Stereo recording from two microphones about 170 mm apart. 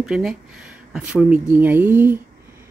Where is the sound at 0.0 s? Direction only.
Centre (ahead or behind).